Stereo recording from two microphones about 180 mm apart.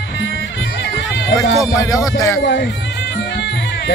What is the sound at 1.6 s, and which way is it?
Speech, 20° left (ahead or behind).